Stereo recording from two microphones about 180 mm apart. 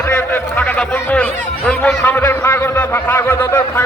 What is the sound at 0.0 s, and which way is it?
A man's voice, 10° left (ahead or behind).